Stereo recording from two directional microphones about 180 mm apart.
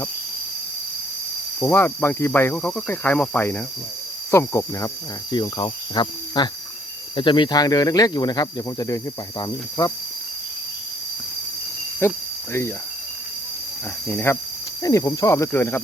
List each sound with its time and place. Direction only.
1.6 s speech: 15° left (ahead or behind)
12.0 s speech: 15° left (ahead or behind)
14.1 s speech: 10° left (ahead or behind)